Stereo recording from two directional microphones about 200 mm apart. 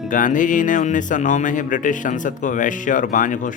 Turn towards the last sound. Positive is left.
turn(degrees=40)  # may be behind; listen again after turning